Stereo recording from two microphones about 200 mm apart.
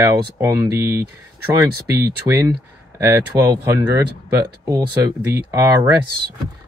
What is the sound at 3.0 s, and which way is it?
Speech, 15° right (ahead or behind).